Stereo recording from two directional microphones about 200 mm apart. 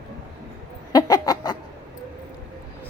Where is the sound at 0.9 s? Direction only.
20° left (ahead or behind).